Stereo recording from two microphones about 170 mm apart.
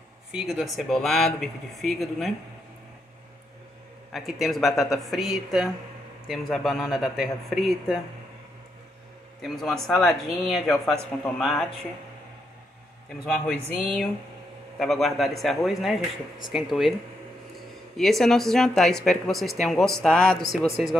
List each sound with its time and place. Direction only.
0.3 s speech: 5° right (ahead or behind)
4.1 s speech: centre (ahead or behind)
9.4 s speech: centre (ahead or behind)
13.2 s speech: 5° left (ahead or behind)
17.9 s speech: centre (ahead or behind)